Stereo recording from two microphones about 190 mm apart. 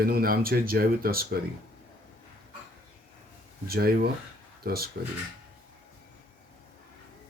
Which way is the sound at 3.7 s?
55° right (ahead or behind).